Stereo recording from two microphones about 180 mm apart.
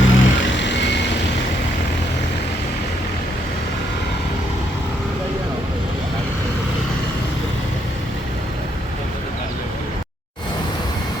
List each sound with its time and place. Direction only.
0.0 s vehicle: 90° left